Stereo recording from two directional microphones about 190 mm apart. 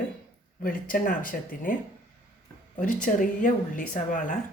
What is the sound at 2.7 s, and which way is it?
Speech, 40° left (ahead or behind).